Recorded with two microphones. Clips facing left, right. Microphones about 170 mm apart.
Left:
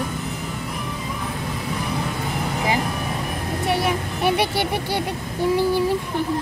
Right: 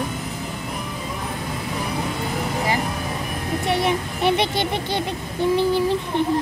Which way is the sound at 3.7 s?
5° left (ahead or behind).